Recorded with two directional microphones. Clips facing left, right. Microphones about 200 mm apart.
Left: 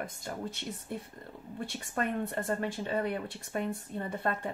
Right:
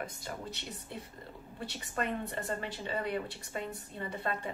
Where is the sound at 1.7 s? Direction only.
50° left (ahead or behind).